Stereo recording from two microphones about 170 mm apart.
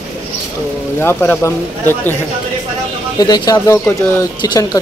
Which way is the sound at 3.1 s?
20° left (ahead or behind).